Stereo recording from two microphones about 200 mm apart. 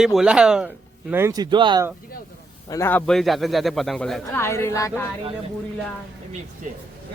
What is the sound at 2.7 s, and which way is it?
Speech, 10° left (ahead or behind).